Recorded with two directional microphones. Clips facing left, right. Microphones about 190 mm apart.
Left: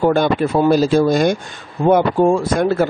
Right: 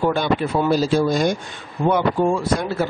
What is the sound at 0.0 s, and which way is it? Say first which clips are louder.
A man's voice: left 5 dB; 50° left (ahead or behind).